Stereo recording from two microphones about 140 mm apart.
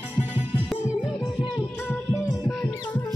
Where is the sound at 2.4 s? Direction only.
30° left (ahead or behind).